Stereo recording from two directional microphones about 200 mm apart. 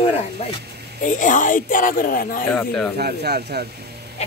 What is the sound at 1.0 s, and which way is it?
Speech, 40° left (ahead or behind).